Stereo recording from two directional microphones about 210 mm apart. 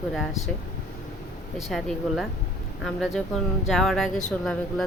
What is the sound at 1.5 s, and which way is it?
Speech, centre (ahead or behind).